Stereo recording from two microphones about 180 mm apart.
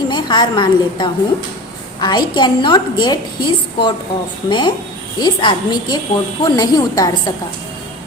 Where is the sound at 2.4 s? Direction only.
25° left (ahead or behind).